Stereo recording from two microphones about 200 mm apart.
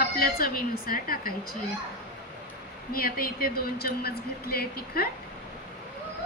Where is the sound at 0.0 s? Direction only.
50° left (ahead or behind).